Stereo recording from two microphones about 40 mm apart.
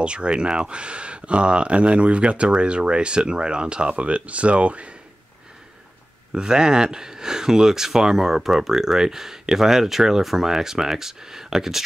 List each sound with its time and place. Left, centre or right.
0.0 s speech: right
6.3 s speech: centre